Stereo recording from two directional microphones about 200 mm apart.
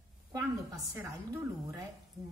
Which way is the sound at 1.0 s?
15° right (ahead or behind).